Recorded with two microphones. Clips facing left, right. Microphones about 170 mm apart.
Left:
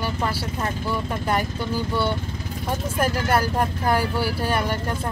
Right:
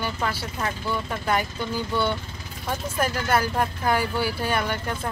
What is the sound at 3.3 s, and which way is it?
Speech, 35° left (ahead or behind).